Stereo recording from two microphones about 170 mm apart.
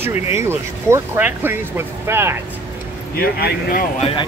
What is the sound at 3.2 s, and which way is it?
Speech, 65° left (ahead or behind).